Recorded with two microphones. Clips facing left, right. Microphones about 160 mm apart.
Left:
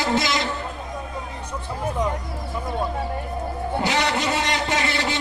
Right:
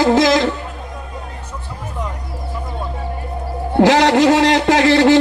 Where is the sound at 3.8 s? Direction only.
90° right.